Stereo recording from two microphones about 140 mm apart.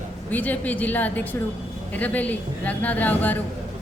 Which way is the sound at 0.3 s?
10° left (ahead or behind).